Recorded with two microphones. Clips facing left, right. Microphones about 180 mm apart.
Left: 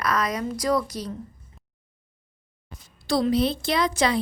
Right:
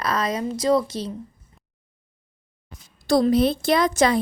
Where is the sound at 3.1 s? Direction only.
45° right (ahead or behind).